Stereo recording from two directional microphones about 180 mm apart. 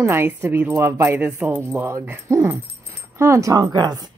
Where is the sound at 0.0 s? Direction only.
10° right (ahead or behind).